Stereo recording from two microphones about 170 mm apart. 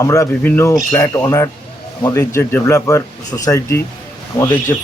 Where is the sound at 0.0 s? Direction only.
20° left (ahead or behind).